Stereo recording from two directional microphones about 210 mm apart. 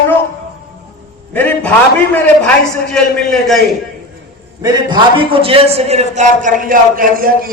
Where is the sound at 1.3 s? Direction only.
10° left (ahead or behind).